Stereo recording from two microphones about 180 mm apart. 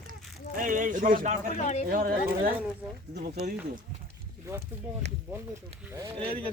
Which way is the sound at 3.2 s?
55° right (ahead or behind).